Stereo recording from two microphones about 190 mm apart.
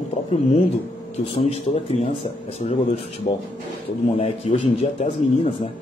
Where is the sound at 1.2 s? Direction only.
35° left (ahead or behind).